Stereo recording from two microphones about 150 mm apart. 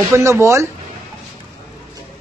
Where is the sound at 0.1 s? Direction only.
20° right (ahead or behind).